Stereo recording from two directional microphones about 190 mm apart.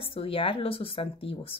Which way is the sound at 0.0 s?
30° left (ahead or behind).